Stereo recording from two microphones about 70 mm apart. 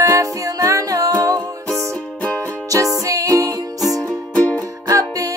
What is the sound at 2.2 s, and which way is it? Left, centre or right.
Music, centre.